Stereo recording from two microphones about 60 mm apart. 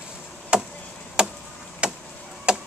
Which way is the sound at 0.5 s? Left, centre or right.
Centre.